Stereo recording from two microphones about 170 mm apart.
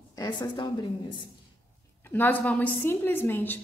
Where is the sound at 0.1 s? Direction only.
20° left (ahead or behind).